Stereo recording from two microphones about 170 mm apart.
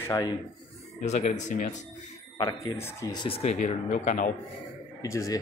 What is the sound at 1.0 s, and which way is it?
Speech, 40° left (ahead or behind).